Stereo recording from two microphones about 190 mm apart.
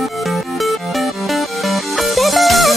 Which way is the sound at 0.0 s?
Centre (ahead or behind).